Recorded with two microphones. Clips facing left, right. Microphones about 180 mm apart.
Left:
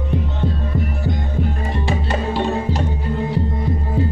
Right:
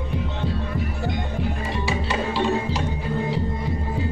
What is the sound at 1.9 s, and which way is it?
Music, 50° left (ahead or behind).